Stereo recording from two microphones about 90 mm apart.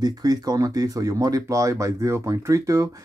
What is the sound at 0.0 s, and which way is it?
Speech, 45° right (ahead or behind).